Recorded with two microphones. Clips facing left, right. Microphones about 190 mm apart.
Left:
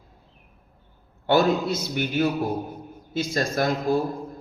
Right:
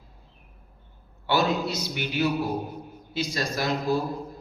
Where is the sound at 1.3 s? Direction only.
50° left (ahead or behind).